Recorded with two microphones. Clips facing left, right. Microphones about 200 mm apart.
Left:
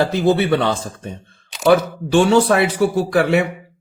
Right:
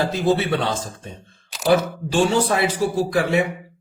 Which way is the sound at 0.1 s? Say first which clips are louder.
Left 4 dB; 55° left (ahead or behind).